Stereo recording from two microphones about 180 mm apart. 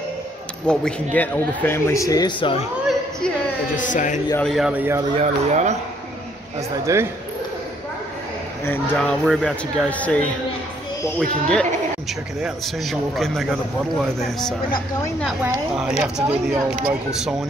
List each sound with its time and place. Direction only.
0.7 s speech: 5° left (ahead or behind); by 2.6 s 25° left (ahead or behind)
3.7 s speech: 45° left (ahead or behind)
4.4 s speech: centre (ahead or behind)
5.1 s speech: 40° right (ahead or behind)
6.9 s speech: 15° right (ahead or behind)
8.6 s speech: 10° left (ahead or behind)
15.8 s speech: 5° right (ahead or behind)